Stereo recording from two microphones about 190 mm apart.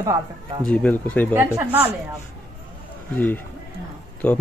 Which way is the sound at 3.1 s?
10° left (ahead or behind).